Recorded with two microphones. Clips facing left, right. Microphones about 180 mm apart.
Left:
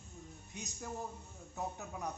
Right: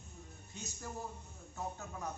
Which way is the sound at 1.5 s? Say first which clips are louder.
Left 1 dB; 15° left (ahead or behind).